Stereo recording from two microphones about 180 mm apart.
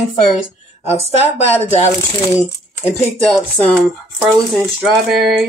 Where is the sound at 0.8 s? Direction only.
35° left (ahead or behind).